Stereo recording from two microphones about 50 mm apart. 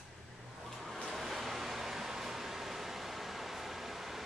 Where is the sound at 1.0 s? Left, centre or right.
Centre.